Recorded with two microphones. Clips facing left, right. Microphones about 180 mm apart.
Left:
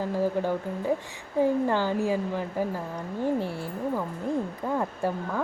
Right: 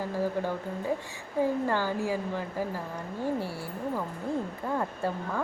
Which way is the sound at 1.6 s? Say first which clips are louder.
Left 3 dB; 15° left (ahead or behind).